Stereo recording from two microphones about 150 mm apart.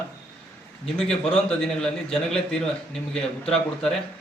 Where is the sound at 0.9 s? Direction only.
5° left (ahead or behind).